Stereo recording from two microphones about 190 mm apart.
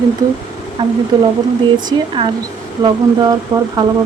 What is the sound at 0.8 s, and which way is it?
Speech, 25° right (ahead or behind).